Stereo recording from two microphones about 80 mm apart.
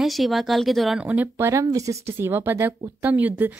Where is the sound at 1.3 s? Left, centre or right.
Right.